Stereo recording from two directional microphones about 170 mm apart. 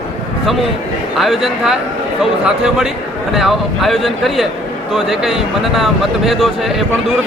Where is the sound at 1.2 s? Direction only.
Centre (ahead or behind).